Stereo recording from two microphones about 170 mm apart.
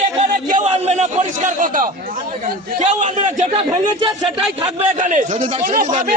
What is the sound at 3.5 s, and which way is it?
Speech, 25° right (ahead or behind).